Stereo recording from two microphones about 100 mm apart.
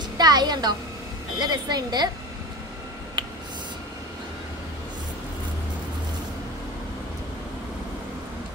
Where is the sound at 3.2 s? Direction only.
50° right (ahead or behind).